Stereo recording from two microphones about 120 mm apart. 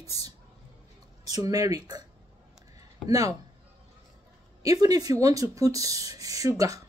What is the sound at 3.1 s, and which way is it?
Speech, 30° right (ahead or behind).